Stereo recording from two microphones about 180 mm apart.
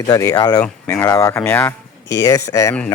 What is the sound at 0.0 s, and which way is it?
Speech, 20° left (ahead or behind).